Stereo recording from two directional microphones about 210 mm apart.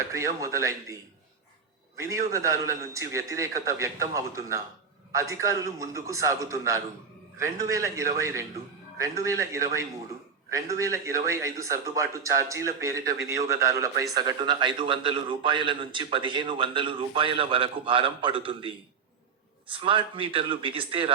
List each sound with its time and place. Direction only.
0.1 s a man's voice: 15° right (ahead or behind)
2.0 s a man's voice: 15° right (ahead or behind)